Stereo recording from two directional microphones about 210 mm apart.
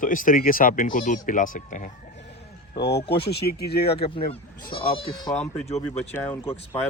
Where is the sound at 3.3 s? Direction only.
50° left (ahead or behind).